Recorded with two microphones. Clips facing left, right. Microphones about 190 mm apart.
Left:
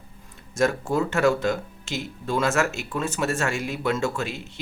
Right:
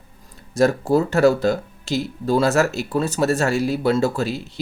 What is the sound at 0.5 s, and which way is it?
Speech, 35° right (ahead or behind).